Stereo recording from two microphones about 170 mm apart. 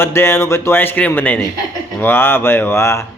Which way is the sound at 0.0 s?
15° left (ahead or behind).